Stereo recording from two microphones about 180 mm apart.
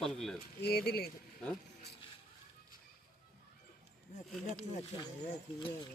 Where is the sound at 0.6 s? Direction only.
60° left (ahead or behind).